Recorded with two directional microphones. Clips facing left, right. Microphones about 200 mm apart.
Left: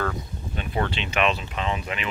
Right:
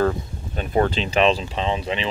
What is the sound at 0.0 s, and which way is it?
Speech, 35° right (ahead or behind).